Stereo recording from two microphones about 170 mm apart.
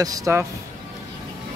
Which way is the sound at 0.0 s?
20° right (ahead or behind).